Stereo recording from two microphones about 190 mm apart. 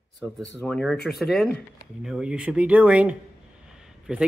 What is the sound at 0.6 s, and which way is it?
A man's voice, centre (ahead or behind).